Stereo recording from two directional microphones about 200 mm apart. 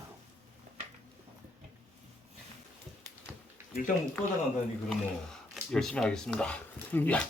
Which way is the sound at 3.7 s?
45° left (ahead or behind).